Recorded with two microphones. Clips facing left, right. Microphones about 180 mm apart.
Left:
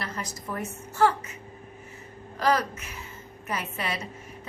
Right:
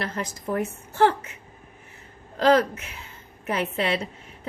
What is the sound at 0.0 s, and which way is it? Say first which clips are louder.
A woman's voice: right 5 dB; 55° right (ahead or behind).